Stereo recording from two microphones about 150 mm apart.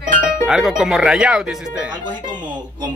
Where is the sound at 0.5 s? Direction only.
5° right (ahead or behind).